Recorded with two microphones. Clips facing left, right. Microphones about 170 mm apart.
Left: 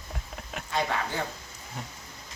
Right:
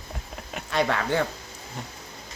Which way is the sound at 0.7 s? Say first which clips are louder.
Right 5 dB; 70° right (ahead or behind).